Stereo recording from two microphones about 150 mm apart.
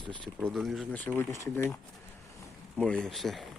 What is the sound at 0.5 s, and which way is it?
Speech, centre (ahead or behind).